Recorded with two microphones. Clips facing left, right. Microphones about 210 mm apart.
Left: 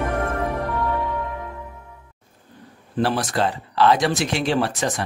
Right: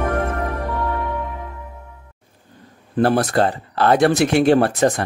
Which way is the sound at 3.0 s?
60° right (ahead or behind).